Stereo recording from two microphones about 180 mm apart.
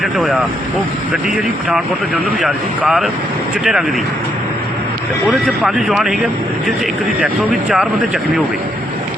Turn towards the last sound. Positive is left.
turn(degrees=-5)  # may be behind; listen again after turning